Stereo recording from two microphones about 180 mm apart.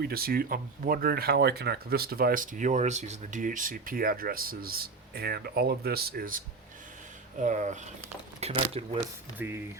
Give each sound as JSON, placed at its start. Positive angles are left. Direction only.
{"t": 0.0, "sound": "speech", "side_deg": -55}
{"t": 7.4, "sound": "speech", "side_deg": -40}
{"t": 9.4, "sound": "speech", "side_deg": -10}